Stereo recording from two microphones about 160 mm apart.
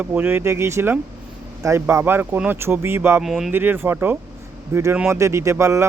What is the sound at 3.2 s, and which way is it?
Speech, centre (ahead or behind).